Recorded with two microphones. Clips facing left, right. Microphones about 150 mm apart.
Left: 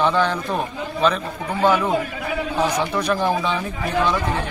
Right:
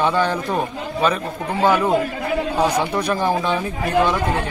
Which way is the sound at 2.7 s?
10° right (ahead or behind).